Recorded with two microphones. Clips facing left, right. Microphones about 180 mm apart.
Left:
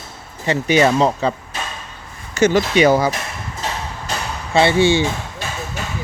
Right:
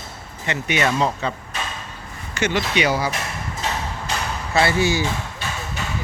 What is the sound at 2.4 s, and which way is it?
Speech, 40° left (ahead or behind).